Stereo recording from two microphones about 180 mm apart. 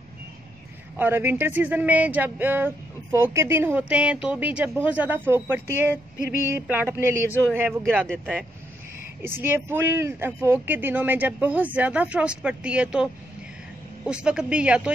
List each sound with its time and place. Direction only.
0.9 s speech: 10° right (ahead or behind)